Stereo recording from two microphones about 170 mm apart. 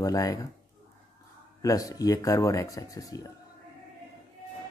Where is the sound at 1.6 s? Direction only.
20° left (ahead or behind).